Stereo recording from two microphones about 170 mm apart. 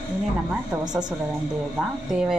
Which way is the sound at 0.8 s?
25° right (ahead or behind).